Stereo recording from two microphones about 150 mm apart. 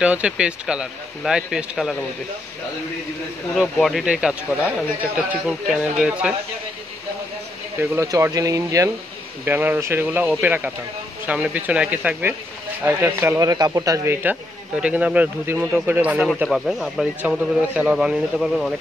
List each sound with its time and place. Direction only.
0.0 s speech: 5° right (ahead or behind)
3.8 s speech: 5° right (ahead or behind)
7.8 s speech: 15° right (ahead or behind); by 18.7 s centre (ahead or behind)